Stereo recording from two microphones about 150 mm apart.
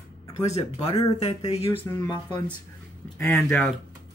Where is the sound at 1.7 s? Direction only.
15° left (ahead or behind).